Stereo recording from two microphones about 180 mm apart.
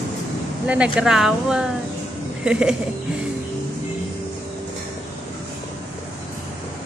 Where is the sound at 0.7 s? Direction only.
5° right (ahead or behind).